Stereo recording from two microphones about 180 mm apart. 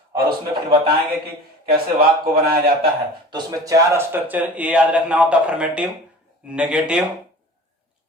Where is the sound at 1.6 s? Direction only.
55° right (ahead or behind).